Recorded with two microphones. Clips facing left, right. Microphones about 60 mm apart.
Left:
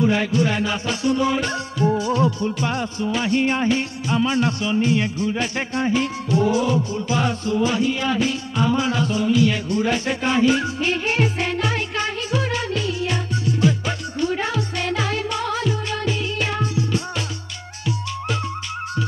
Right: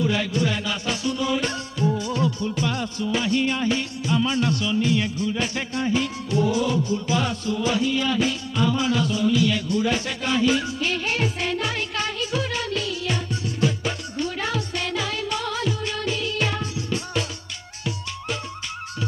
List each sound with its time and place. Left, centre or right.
0.0 s music: left
2.0 s speech: left
12.4 s music: left
14.3 s music: left